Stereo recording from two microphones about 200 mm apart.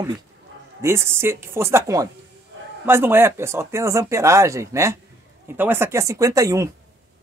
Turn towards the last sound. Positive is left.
turn(degrees=-15)  # may be behind; listen again after turning